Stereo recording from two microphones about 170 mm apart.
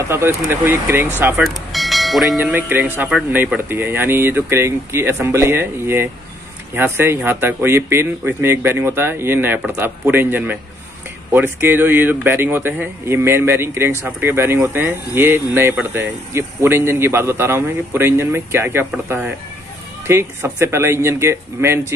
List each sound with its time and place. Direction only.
0.1 s speech: 15° right (ahead or behind)
1.4 s bell: centre (ahead or behind)
2.3 s speech: 10° right (ahead or behind)